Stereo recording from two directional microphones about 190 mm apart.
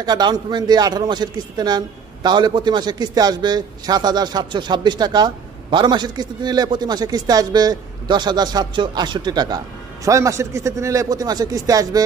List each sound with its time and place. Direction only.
0.0 s a man's voice: 20° right (ahead or behind)